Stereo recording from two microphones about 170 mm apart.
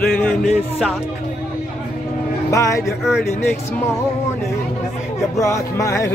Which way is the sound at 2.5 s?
20° left (ahead or behind).